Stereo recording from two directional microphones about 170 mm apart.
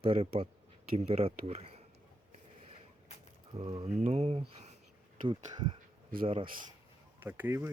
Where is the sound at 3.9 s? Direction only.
40° right (ahead or behind).